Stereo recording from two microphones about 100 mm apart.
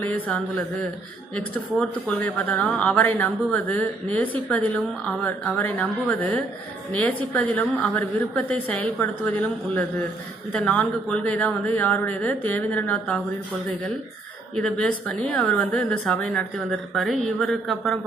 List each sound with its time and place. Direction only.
1.3 s a woman's voice: 10° left (ahead or behind)
14.5 s a woman's voice: 10° left (ahead or behind)